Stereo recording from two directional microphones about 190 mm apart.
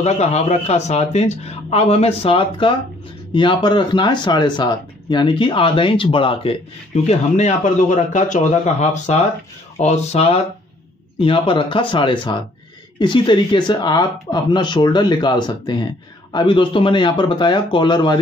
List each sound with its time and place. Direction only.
0.0 s speech: 35° left (ahead or behind)